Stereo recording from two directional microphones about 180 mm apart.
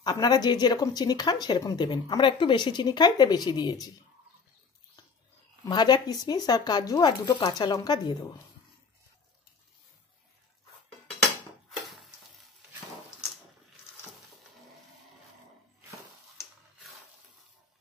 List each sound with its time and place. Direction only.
0.0 s speech: 20° left (ahead or behind)
5.7 s speech: 25° left (ahead or behind)